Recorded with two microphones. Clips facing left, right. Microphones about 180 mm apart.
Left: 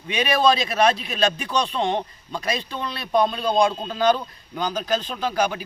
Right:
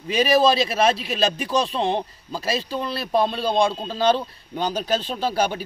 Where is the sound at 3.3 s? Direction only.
Centre (ahead or behind).